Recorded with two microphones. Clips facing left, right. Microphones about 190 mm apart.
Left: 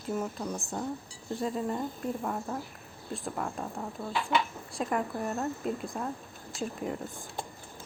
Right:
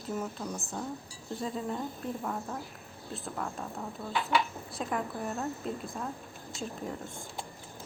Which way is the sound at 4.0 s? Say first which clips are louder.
Even; 10° left (ahead or behind).